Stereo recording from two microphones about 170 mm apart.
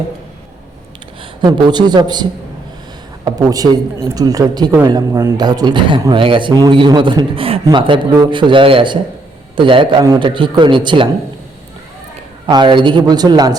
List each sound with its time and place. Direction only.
1.2 s a man's voice: 25° right (ahead or behind)
3.2 s speech: 20° right (ahead or behind)
12.5 s speech: 25° right (ahead or behind)